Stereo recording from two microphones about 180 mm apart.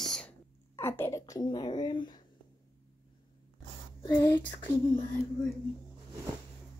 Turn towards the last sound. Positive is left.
turn(degrees=30)  # may be behind; listen again after turning